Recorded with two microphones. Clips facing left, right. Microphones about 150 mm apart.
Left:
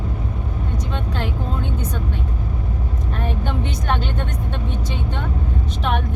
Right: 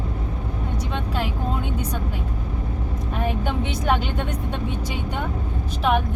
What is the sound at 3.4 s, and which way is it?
Speech, 10° right (ahead or behind).